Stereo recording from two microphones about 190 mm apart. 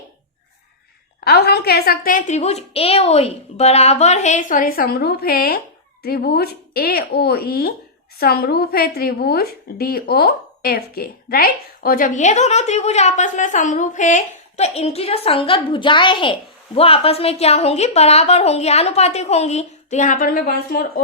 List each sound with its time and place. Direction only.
1.2 s a woman's voice: 55° left (ahead or behind)